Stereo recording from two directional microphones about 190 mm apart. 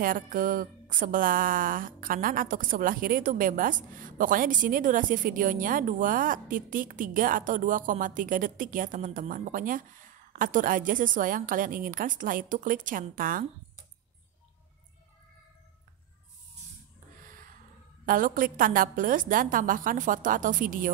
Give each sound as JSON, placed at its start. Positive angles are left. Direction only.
{"t": 0.0, "sound": "speech", "side_deg": -45}
{"t": 18.0, "sound": "speech", "side_deg": -45}